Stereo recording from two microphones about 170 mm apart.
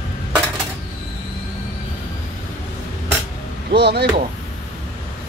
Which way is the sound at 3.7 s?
75° right (ahead or behind).